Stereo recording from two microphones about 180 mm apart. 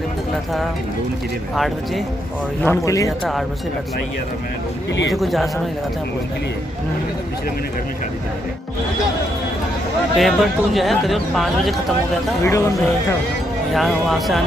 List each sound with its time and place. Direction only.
1.5 s speech: centre (ahead or behind)
2.6 s speech: 15° left (ahead or behind)
5.1 s speech: centre (ahead or behind)
10.1 s speech: centre (ahead or behind)
12.4 s speech: 15° left (ahead or behind)
13.7 s speech: centre (ahead or behind)